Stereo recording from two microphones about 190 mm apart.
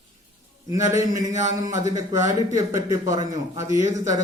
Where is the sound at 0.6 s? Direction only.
15° right (ahead or behind).